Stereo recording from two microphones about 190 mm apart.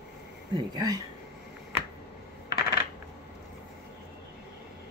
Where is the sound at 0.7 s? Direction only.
20° right (ahead or behind).